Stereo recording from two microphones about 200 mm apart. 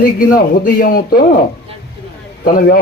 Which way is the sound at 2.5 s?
45° left (ahead or behind).